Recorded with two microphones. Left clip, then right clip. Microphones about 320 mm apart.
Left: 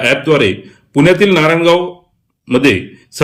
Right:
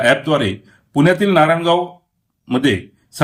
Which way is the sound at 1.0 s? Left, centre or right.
Centre.